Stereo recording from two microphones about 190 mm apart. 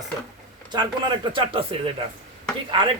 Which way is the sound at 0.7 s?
25° right (ahead or behind).